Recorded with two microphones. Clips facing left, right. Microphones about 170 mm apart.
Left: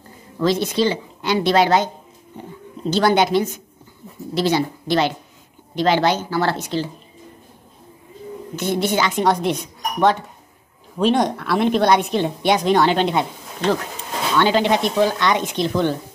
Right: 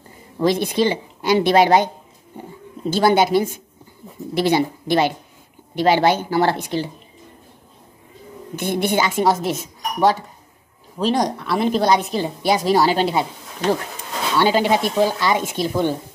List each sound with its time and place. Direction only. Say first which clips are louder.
0.4 s a woman's voice: right 1 dB; 15° right (ahead or behind)
3.0 s a woman's voice: right 1 dB; 5° right (ahead or behind)
5.8 s a woman's voice: right 1 dB; 10° right (ahead or behind)
8.6 s speech: even; 55° right (ahead or behind)
8.9 s a woman's voice: right 2 dB; 5° right (ahead or behind)